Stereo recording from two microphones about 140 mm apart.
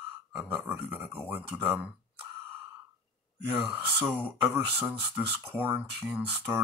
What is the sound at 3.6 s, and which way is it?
Speech, 15° right (ahead or behind).